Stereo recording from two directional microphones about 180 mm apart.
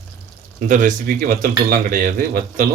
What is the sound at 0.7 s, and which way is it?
Speech, 45° right (ahead or behind).